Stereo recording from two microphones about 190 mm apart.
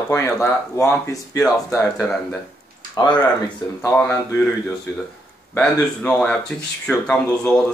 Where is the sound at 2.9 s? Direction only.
20° left (ahead or behind).